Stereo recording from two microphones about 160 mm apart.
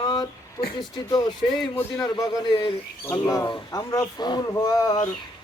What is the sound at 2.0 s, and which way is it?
Speech, 20° left (ahead or behind).